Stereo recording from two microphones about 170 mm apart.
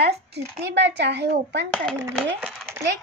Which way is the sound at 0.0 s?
70° right (ahead or behind).